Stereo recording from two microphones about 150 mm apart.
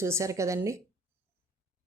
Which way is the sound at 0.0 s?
20° right (ahead or behind).